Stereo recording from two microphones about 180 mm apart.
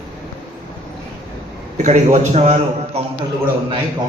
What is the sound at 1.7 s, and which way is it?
A man's voice, 40° right (ahead or behind).